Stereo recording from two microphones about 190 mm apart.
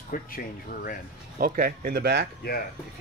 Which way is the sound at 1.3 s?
50° right (ahead or behind).